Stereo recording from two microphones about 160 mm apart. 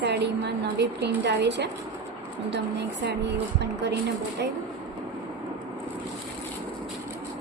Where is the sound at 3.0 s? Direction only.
90° right.